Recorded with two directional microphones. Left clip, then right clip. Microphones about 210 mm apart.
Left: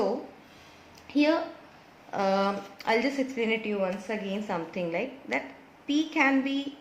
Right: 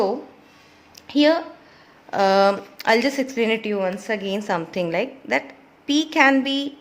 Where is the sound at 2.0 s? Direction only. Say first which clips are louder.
Right 10 dB; 50° right (ahead or behind).